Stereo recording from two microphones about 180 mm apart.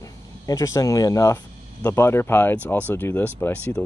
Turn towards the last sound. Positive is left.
turn(degrees=10)  # may be behind; listen again after turning